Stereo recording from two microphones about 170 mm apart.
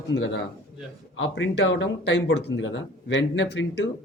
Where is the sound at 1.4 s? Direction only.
90° left.